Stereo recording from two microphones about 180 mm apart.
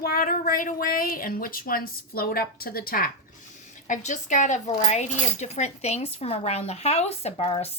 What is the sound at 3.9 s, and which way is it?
Speech, 45° left (ahead or behind).